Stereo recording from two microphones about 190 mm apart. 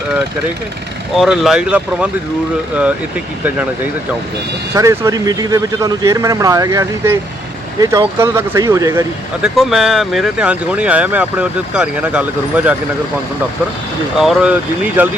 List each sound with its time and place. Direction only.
1.1 s speech: centre (ahead or behind)
4.7 s speech: 15° right (ahead or behind)
9.6 s speech: centre (ahead or behind)
14.2 s speech: 5° right (ahead or behind)